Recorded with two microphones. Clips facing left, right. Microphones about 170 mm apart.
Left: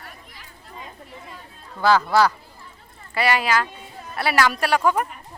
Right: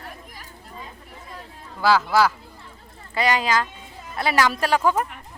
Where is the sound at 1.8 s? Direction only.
5° right (ahead or behind).